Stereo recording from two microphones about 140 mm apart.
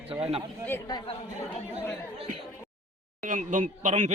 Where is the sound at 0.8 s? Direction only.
30° left (ahead or behind).